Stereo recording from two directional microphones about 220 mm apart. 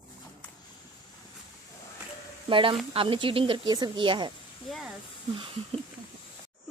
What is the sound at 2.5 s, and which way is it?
Speech, 25° right (ahead or behind).